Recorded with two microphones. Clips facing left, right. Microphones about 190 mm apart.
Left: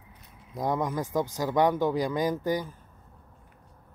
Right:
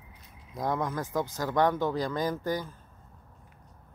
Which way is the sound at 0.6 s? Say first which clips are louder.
Left 2 dB; 15° left (ahead or behind).